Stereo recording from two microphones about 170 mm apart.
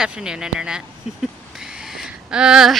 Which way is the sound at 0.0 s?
5° right (ahead or behind).